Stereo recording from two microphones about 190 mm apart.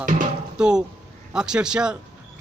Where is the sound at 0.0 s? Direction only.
45° right (ahead or behind).